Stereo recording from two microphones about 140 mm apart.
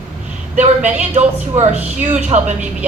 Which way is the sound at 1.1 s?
50° right (ahead or behind).